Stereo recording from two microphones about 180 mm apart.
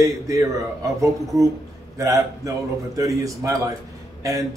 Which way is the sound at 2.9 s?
20° right (ahead or behind).